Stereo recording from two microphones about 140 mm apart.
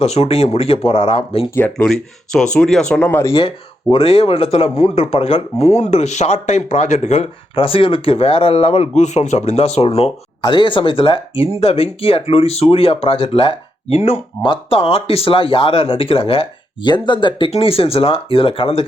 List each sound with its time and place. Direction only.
0.0 s speech: 45° left (ahead or behind)
1.5 s speech: 15° left (ahead or behind)
1.9 s speech: 5° left (ahead or behind)
3.9 s speech: 40° left (ahead or behind)
10.4 s speech: 35° left (ahead or behind)